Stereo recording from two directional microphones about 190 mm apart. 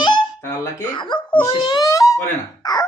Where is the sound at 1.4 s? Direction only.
20° left (ahead or behind).